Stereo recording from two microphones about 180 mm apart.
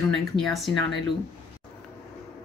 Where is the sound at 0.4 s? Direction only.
Centre (ahead or behind).